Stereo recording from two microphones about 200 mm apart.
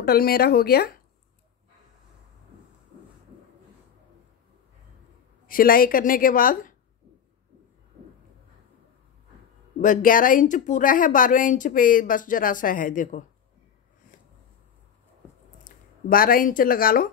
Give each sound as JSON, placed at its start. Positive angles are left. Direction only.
{"t": 0.0, "sound": "a woman's voice", "side_deg": 50}
{"t": 5.5, "sound": "a woman's voice", "side_deg": 45}
{"t": 9.8, "sound": "speech", "side_deg": 40}
{"t": 16.1, "sound": "a woman's voice", "side_deg": 45}